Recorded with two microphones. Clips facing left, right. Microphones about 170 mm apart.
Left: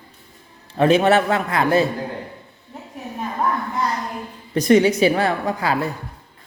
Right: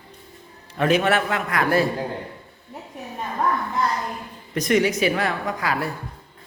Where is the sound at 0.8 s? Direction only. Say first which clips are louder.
Left 5 dB; 30° left (ahead or behind).